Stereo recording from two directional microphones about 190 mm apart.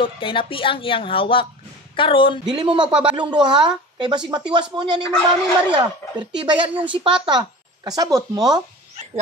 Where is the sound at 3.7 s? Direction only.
25° right (ahead or behind).